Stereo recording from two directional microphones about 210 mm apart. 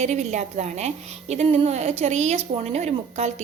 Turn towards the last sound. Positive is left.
turn(degrees=-30)  # may be behind; listen again after turning